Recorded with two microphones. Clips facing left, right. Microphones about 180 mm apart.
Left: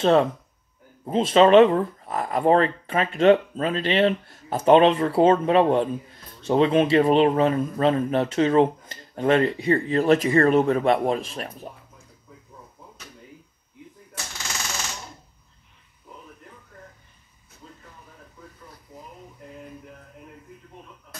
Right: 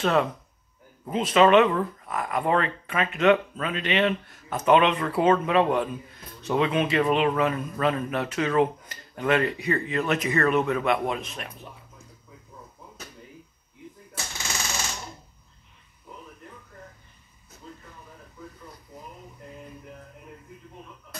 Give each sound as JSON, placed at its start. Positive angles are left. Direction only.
{"t": 0.0, "sound": "speech", "side_deg": 30}